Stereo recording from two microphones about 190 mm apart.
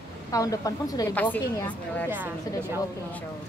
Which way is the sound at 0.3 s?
20° left (ahead or behind).